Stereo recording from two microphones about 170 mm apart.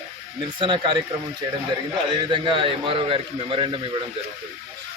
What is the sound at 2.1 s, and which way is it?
A man's voice, 30° right (ahead or behind).